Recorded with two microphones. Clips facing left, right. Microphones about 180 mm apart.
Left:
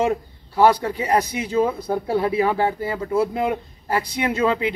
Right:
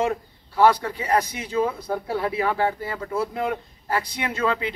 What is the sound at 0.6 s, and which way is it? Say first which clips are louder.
Speech: left 2 dB; 10° left (ahead or behind).